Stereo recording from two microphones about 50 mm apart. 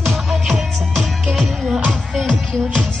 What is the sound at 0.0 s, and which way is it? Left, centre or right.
Music, centre.